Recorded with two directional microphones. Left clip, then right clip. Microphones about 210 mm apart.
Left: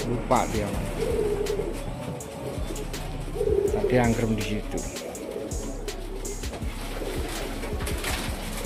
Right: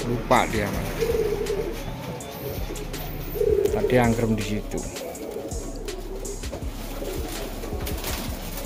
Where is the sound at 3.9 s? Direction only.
Centre (ahead or behind).